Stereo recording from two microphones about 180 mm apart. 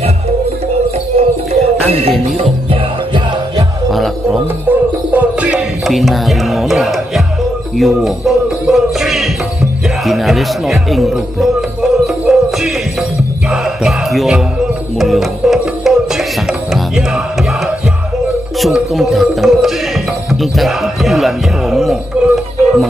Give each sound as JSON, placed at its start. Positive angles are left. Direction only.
{"t": 1.1, "sound": "music", "side_deg": -35}
{"t": 3.9, "sound": "music", "side_deg": 0}